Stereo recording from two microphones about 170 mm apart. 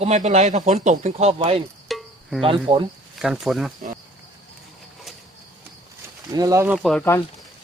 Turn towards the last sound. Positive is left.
turn(degrees=0)  # may be behind; listen again after turning